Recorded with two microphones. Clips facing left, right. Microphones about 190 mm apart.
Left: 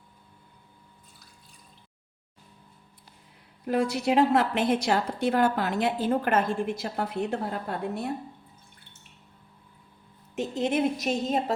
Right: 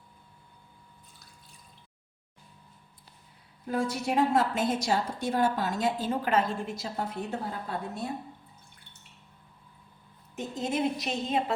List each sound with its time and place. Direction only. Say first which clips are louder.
3.7 s a woman's voice: left 4 dB; 70° left (ahead or behind)
10.3 s a woman's voice: left 5 dB; 70° left (ahead or behind)
10.9 s a woman's voice: left 3 dB; 45° left (ahead or behind)